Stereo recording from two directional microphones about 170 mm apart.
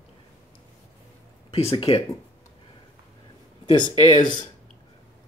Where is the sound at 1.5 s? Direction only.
35° left (ahead or behind).